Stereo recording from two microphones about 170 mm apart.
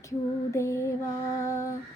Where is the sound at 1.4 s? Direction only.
15° left (ahead or behind).